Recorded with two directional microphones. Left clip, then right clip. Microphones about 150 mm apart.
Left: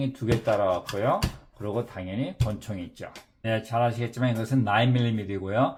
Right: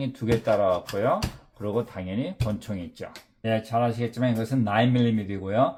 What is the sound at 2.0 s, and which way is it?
Speech, 40° right (ahead or behind).